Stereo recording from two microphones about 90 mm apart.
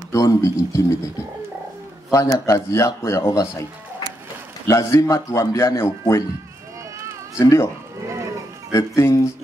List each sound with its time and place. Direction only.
0.1 s speech: 40° left (ahead or behind)
4.6 s speech: 35° left (ahead or behind)
7.3 s speech: 35° left (ahead or behind)
8.1 s livestock: 35° right (ahead or behind)
8.7 s speech: 35° left (ahead or behind)